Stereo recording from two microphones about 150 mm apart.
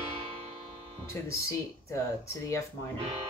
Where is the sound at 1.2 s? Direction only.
20° left (ahead or behind).